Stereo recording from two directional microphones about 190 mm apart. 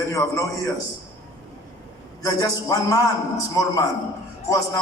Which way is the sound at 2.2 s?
20° left (ahead or behind).